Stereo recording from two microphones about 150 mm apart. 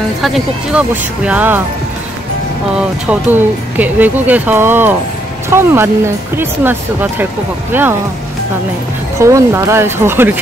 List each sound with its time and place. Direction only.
0.2 s speech: centre (ahead or behind)
3.1 s speech: 10° right (ahead or behind)
9.2 s speech: 20° right (ahead or behind)